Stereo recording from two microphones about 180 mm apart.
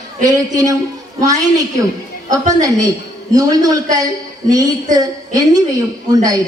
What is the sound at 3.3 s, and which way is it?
A woman's voice, 20° right (ahead or behind).